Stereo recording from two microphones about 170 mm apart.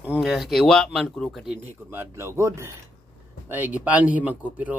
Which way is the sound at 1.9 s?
15° right (ahead or behind).